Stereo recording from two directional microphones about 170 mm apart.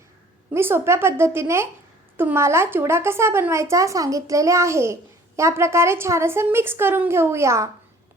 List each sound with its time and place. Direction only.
0.5 s speech: 15° right (ahead or behind)